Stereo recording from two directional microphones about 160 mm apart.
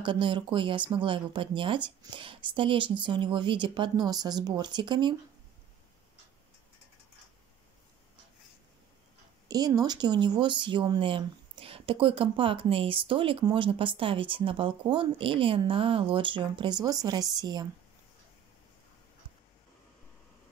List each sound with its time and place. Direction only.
0.0 s speech: 30° right (ahead or behind)
9.5 s speech: 25° right (ahead or behind)